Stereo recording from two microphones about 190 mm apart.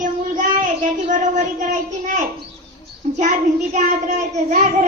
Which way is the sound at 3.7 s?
40° right (ahead or behind).